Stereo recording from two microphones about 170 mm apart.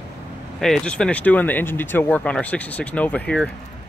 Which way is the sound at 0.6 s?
5° left (ahead or behind).